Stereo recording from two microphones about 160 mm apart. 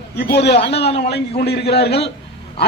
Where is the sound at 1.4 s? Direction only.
90° left.